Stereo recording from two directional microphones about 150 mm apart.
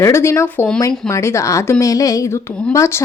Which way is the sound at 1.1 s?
20° left (ahead or behind).